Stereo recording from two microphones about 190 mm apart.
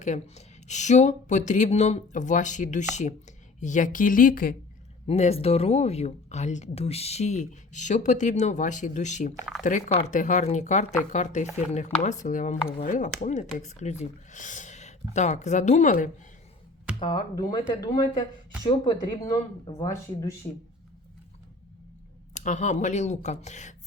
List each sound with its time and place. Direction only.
0.0 s speech: 40° left (ahead or behind)
5.0 s speech: 35° left (ahead or behind)
17.0 s speech: 25° left (ahead or behind)
22.4 s speech: 40° left (ahead or behind)